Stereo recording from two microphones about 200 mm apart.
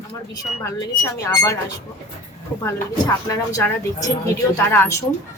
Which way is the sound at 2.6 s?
15° left (ahead or behind).